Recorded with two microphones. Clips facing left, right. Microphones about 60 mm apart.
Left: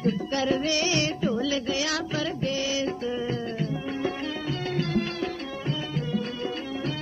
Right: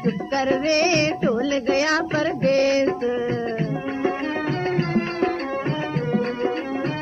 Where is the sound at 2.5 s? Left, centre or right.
Right.